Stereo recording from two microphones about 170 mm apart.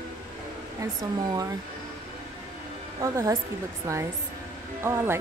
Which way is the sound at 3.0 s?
15° right (ahead or behind).